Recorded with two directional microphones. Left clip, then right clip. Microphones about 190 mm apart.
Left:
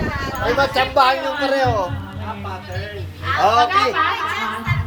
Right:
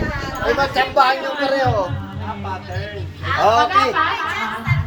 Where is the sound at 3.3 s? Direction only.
5° left (ahead or behind).